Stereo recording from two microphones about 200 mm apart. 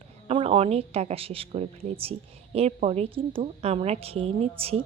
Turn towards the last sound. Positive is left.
turn(degrees=-30)  # may be behind; listen again after turning